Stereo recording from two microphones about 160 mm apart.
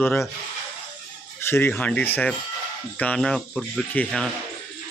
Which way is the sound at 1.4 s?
15° left (ahead or behind).